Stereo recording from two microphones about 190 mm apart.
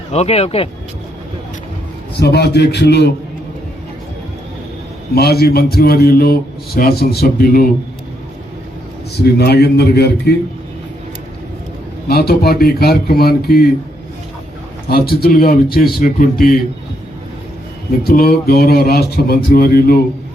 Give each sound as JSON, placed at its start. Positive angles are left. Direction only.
{"t": 0.1, "sound": "speech", "side_deg": 35}
{"t": 2.1, "sound": "a man's voice", "side_deg": 60}
{"t": 5.1, "sound": "a man's voice", "side_deg": 55}
{"t": 9.1, "sound": "a man's voice", "side_deg": 60}
{"t": 12.0, "sound": "a man's voice", "side_deg": 55}
{"t": 14.8, "sound": "speech", "side_deg": 55}
{"t": 18.0, "sound": "speech", "side_deg": 50}